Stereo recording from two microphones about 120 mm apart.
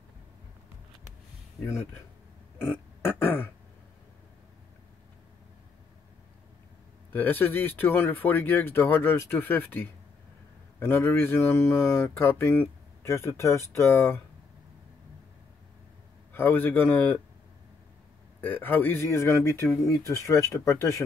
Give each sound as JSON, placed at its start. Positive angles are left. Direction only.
{"t": 1.6, "sound": "speech", "side_deg": 20}
{"t": 3.1, "sound": "throat clearing", "side_deg": 15}
{"t": 7.1, "sound": "speech", "side_deg": 15}
{"t": 16.3, "sound": "speech", "side_deg": 15}
{"t": 18.4, "sound": "speech", "side_deg": 15}